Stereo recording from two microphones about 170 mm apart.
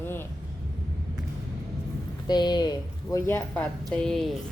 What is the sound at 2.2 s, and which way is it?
Speech, 25° left (ahead or behind).